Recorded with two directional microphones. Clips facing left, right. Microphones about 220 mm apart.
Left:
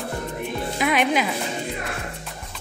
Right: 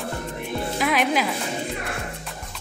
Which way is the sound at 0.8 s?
Centre (ahead or behind).